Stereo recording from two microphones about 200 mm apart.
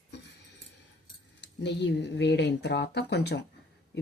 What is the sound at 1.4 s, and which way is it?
Speech, 60° left (ahead or behind).